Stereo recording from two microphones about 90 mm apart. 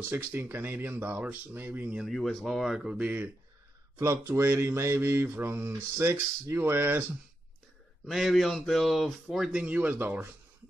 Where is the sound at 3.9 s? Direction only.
35° right (ahead or behind).